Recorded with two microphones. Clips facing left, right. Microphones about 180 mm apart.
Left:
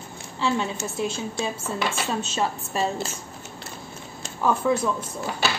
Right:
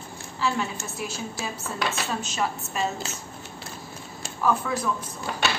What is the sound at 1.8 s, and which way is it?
A woman's voice, 25° left (ahead or behind).